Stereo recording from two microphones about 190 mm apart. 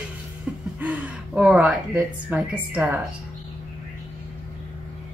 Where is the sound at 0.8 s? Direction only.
10° right (ahead or behind).